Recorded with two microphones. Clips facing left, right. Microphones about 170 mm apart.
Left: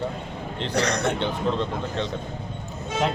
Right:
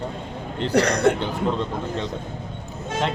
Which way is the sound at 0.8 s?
30° right (ahead or behind).